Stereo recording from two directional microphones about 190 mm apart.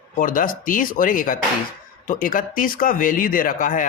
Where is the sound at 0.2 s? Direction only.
45° left (ahead or behind).